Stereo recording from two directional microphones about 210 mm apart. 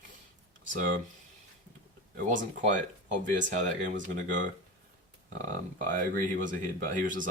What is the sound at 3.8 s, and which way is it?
Speech, 40° right (ahead or behind).